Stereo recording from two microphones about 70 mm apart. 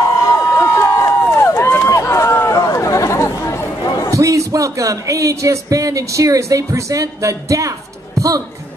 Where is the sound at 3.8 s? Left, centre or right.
Left.